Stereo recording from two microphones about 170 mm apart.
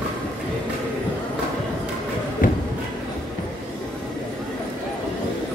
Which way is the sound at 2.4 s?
55° left (ahead or behind).